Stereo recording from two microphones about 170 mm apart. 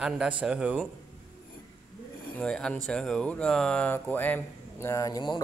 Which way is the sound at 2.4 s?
5° left (ahead or behind).